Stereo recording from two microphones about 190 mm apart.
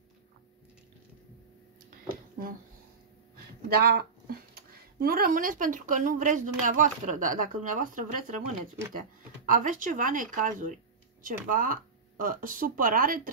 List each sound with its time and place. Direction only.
1.9 s a sound: 45° right (ahead or behind)
3.6 s speech: 55° right (ahead or behind)
9.5 s speech: 45° right (ahead or behind)